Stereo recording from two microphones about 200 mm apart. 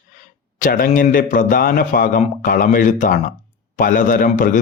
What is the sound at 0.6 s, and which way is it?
Speech, 45° left (ahead or behind).